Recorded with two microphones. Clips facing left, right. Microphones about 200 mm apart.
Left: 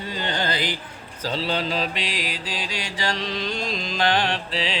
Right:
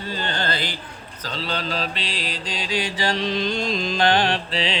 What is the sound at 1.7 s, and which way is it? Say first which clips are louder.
Mantra: left 1 dB; 15° left (ahead or behind).